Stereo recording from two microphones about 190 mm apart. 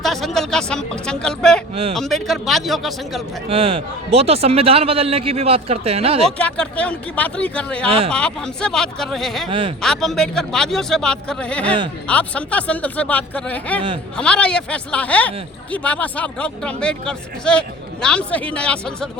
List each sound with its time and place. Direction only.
0.0 s speech: centre (ahead or behind)
1.7 s a man's voice: 30° right (ahead or behind)
2.0 s speech: centre (ahead or behind)
3.5 s a man's voice: 30° right (ahead or behind)
6.4 s speech: 5° left (ahead or behind)
7.9 s a man's voice: 30° right (ahead or behind)
8.1 s speech: 5° left (ahead or behind)
9.5 s speech: 25° right (ahead or behind)
9.8 s speech: centre (ahead or behind)